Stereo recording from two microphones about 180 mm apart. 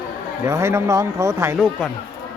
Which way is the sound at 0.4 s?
15° right (ahead or behind).